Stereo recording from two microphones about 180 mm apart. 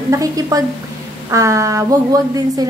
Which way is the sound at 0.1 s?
20° right (ahead or behind).